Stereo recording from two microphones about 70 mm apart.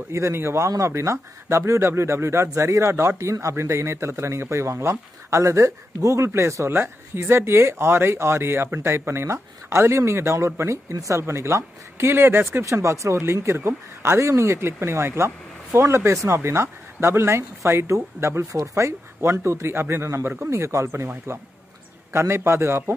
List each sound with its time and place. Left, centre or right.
0.1 s speech: right
22.1 s speech: right